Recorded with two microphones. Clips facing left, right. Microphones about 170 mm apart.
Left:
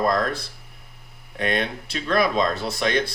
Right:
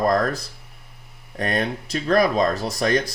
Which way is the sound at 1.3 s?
40° right (ahead or behind).